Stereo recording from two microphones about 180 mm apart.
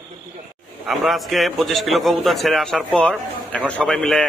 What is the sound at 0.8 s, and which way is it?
A man's voice, centre (ahead or behind).